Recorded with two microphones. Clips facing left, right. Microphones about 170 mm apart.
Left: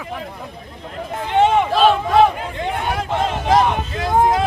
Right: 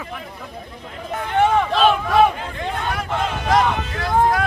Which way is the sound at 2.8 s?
25° left (ahead or behind).